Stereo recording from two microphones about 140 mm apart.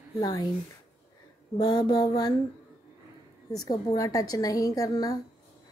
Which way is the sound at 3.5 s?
25° left (ahead or behind).